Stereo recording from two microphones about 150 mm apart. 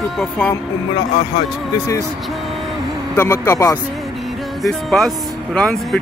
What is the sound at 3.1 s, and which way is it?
Speech, 15° left (ahead or behind).